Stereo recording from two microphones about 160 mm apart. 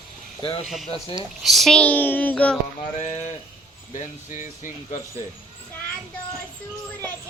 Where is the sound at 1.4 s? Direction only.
Centre (ahead or behind).